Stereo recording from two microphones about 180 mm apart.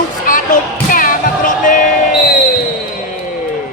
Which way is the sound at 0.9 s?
50° left (ahead or behind).